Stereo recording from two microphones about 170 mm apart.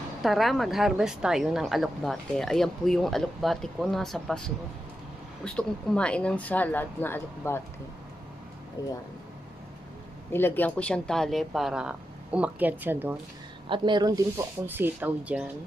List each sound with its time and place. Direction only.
0.2 s a woman's voice: centre (ahead or behind)
8.8 s speech: 20° left (ahead or behind)
10.3 s a woman's voice: 10° left (ahead or behind); by 13.2 s 10° right (ahead or behind)
13.7 s speech: 25° right (ahead or behind); by 15.4 s 10° right (ahead or behind)